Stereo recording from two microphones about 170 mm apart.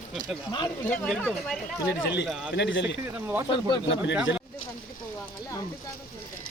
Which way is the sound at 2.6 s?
90° left.